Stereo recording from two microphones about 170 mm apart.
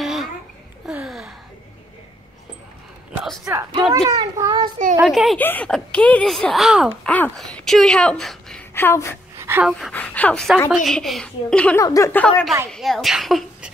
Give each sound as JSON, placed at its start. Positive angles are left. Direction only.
{"t": 0.0, "sound": "babbling", "side_deg": 0}
{"t": 0.8, "sound": "a sound", "side_deg": -5}
{"t": 3.4, "sound": "a child's voice", "side_deg": -20}
{"t": 5.0, "sound": "speech", "side_deg": 0}
{"t": 5.4, "sound": "speech", "side_deg": 10}
{"t": 7.1, "sound": "speech", "side_deg": 10}
{"t": 8.7, "sound": "speech", "side_deg": 15}
{"t": 9.4, "sound": "a sound", "side_deg": -15}
{"t": 9.7, "sound": "speech", "side_deg": 0}
{"t": 11.8, "sound": "speech", "side_deg": 20}